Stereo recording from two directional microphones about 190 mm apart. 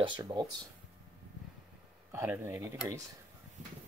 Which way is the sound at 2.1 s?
15° right (ahead or behind).